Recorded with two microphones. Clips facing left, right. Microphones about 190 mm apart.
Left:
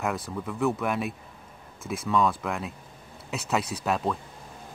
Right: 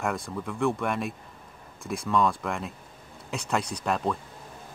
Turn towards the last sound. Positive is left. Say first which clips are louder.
# even
turn(degrees=0)  # may be behind; listen again after turning